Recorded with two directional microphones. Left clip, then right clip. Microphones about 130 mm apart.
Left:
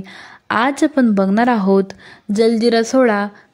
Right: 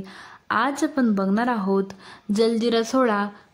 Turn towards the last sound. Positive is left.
turn(degrees=25)  # may be behind; listen again after turning